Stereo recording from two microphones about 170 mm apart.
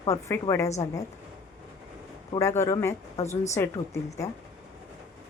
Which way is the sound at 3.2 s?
40° left (ahead or behind).